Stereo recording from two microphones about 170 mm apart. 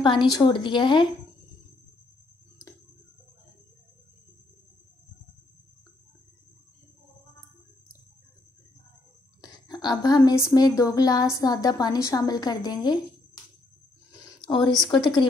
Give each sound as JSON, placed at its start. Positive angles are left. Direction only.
{"t": 0.0, "sound": "speech", "side_deg": 25}
{"t": 9.4, "sound": "speech", "side_deg": 25}
{"t": 14.1, "sound": "a sound", "side_deg": 20}
{"t": 14.9, "sound": "speech", "side_deg": 25}